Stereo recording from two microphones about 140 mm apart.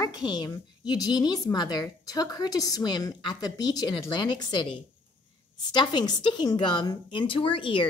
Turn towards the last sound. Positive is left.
turn(degrees=40)  # may be behind; listen again after turning